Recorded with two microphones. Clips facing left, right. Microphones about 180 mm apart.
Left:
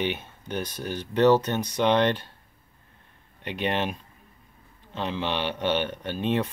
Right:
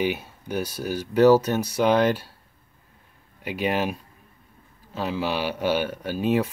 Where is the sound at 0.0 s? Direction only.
10° right (ahead or behind).